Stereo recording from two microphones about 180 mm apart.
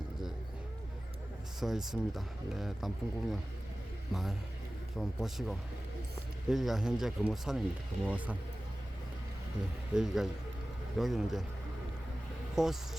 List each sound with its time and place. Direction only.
1.5 s speech: centre (ahead or behind)
9.9 s speech: 5° right (ahead or behind)
12.6 s speech: centre (ahead or behind)